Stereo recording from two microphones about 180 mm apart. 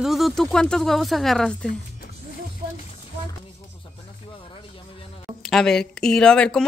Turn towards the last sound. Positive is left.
turn(degrees=5)  # may be behind; listen again after turning